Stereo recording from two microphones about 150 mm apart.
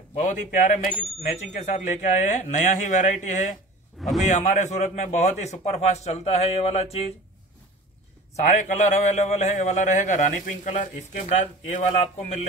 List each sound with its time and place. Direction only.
0.2 s a man's voice: 50° left (ahead or behind)
4.0 s a sound: centre (ahead or behind)
4.3 s a man's voice: 50° left (ahead or behind)
8.4 s a man's voice: 55° left (ahead or behind)